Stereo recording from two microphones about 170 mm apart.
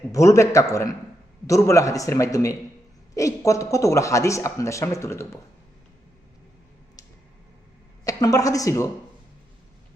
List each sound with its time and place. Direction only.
0.1 s a man's voice: 15° left (ahead or behind)
8.0 s a man's voice: 20° left (ahead or behind)